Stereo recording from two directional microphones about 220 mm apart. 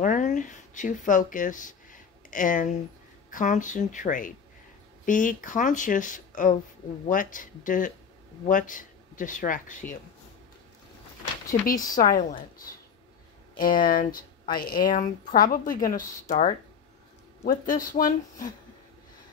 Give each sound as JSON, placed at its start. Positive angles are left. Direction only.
{"t": 0.0, "sound": "speech", "side_deg": 35}
{"t": 11.9, "sound": "speech", "side_deg": 40}